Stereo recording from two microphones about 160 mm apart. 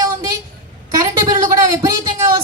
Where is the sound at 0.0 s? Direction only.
20° right (ahead or behind).